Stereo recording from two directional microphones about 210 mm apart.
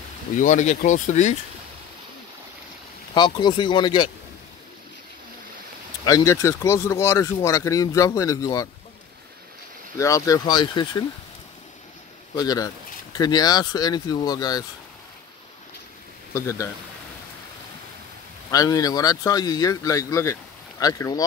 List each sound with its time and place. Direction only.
0.4 s speech: 35° left (ahead or behind)
3.2 s speech: 20° left (ahead or behind)
6.0 s speech: 15° left (ahead or behind)
9.9 s speech: 15° left (ahead or behind)
12.4 s speech: 15° left (ahead or behind)
16.3 s speech: 15° left (ahead or behind)
18.5 s speech: 15° left (ahead or behind)